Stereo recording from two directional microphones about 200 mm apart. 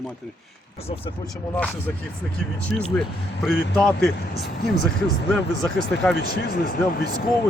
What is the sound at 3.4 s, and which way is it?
Speech, 5° left (ahead or behind).